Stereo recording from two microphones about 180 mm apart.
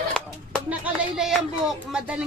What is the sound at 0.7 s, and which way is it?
A woman's voice, centre (ahead or behind).